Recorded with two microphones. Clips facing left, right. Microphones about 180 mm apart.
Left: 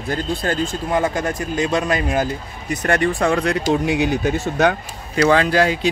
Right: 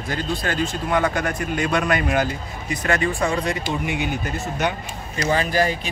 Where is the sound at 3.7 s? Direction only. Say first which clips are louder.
Left 7 dB; 90° left.